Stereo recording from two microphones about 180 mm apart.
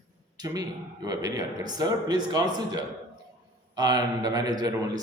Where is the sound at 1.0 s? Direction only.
20° right (ahead or behind).